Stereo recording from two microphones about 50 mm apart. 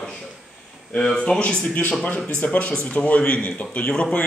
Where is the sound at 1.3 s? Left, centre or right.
Centre.